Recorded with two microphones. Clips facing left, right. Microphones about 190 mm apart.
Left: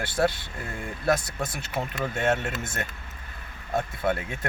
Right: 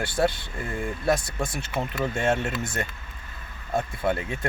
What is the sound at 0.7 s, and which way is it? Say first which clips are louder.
Speech: right 1 dB; 10° right (ahead or behind).